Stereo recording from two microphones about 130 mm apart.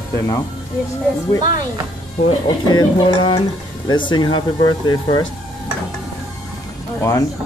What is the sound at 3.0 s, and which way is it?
Speech, 40° left (ahead or behind).